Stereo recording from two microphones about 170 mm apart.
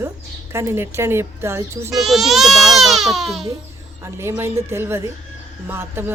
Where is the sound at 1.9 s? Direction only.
Centre (ahead or behind).